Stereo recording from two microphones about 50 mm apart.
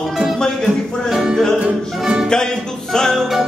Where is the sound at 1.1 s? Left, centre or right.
Centre.